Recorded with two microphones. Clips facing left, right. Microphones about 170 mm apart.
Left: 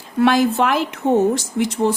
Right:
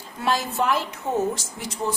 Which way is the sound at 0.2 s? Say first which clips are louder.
Left 9 dB; 70° left (ahead or behind).